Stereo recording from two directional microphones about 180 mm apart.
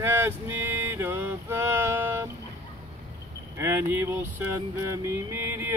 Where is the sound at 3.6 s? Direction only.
15° right (ahead or behind).